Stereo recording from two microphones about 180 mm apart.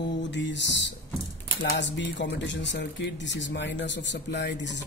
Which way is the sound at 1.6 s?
80° left.